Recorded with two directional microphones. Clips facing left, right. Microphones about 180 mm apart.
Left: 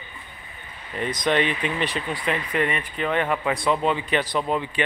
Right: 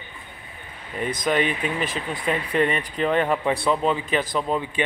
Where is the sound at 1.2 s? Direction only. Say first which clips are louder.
Left 1 dB; 5° right (ahead or behind).